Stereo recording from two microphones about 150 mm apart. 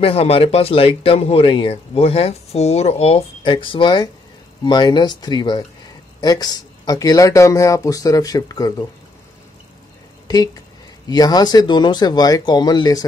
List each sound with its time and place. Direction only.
0.0 s speech: 40° left (ahead or behind); by 8.8 s 25° left (ahead or behind)
10.2 s speech: 25° left (ahead or behind)